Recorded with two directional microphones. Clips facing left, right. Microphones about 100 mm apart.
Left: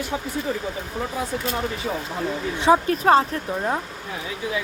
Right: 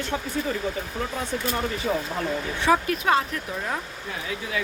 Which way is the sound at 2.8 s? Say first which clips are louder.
Left 5 dB; 35° left (ahead or behind).